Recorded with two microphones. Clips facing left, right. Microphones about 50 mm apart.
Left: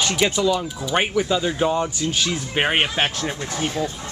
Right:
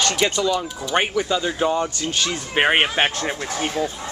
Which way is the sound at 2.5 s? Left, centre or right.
Centre.